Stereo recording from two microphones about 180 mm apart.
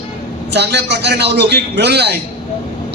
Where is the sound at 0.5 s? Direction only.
70° right (ahead or behind).